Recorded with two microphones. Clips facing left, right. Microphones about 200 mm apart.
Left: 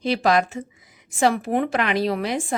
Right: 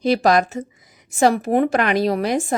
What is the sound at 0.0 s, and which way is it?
Speech, 40° right (ahead or behind).